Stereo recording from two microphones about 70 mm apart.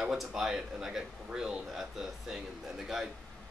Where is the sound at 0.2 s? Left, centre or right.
Centre.